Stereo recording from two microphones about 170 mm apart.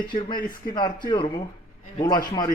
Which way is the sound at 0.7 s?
25° left (ahead or behind).